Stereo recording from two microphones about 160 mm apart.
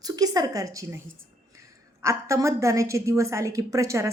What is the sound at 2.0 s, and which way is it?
A woman's voice, 20° right (ahead or behind).